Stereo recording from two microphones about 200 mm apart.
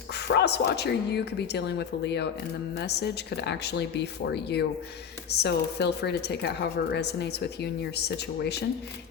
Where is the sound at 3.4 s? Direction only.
60° left (ahead or behind).